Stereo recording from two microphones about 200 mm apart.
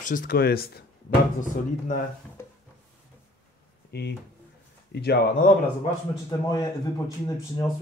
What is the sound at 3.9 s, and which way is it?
Speech, 55° left (ahead or behind).